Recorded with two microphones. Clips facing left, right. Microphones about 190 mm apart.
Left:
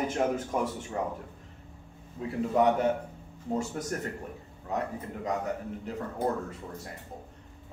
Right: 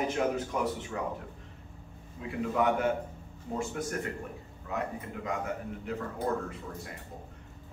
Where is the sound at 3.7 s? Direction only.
40° left (ahead or behind).